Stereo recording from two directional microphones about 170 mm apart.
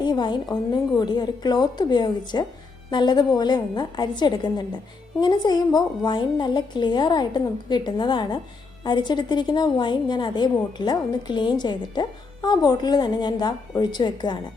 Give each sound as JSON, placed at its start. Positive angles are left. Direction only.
{"t": 0.0, "sound": "a woman's voice", "side_deg": 25}